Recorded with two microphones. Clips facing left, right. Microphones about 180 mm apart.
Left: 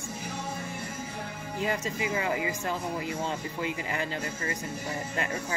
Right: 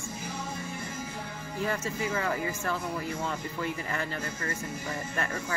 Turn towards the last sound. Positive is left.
turn(degrees=15)  # may be behind; listen again after turning